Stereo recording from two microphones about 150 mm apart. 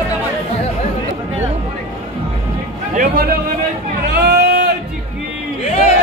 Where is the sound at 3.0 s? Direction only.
80° right.